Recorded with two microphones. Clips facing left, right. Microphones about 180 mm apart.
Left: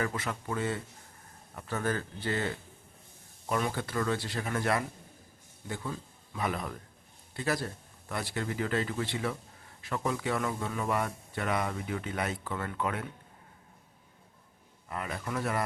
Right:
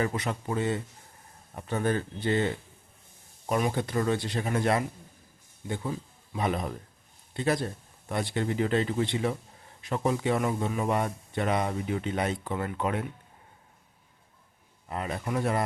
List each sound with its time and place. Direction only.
0.0 s a man's voice: 20° right (ahead or behind)
3.6 s a man's voice: 20° right (ahead or behind)
14.8 s a man's voice: 25° right (ahead or behind)